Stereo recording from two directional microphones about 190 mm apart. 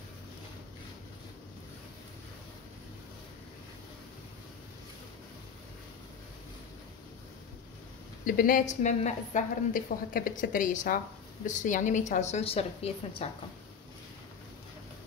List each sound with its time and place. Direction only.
8.3 s a woman's voice: 45° left (ahead or behind)